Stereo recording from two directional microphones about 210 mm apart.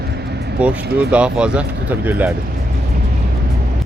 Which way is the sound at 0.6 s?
5° right (ahead or behind).